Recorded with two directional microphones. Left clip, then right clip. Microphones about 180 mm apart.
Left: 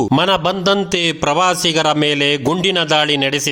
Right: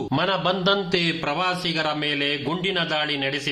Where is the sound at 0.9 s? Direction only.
60° left (ahead or behind).